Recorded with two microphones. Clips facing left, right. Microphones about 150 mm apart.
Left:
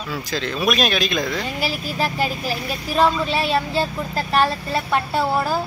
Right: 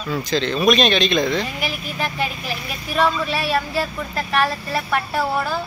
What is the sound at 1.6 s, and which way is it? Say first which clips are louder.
Speech: left 2 dB; 35° left (ahead or behind).